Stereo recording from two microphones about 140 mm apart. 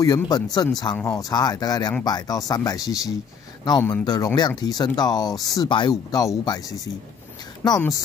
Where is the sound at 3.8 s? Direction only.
10° left (ahead or behind).